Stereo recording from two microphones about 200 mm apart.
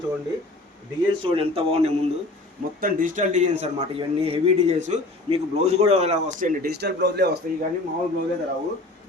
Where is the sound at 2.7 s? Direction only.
45° right (ahead or behind).